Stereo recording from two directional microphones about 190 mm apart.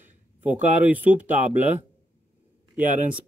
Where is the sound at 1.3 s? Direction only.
40° right (ahead or behind).